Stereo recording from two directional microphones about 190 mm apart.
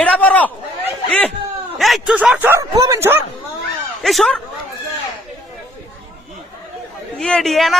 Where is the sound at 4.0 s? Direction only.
Centre (ahead or behind).